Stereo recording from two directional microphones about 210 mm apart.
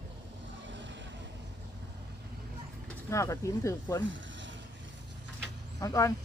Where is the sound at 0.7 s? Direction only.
60° right (ahead or behind).